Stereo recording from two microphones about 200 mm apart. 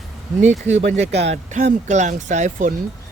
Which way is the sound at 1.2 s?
35° right (ahead or behind).